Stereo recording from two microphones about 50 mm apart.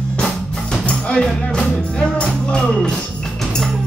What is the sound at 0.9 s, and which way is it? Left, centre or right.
Music, left.